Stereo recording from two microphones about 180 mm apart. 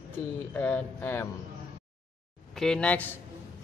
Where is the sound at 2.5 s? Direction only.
5° left (ahead or behind).